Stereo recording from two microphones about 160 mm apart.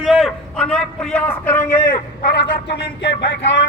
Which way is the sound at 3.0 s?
90° left.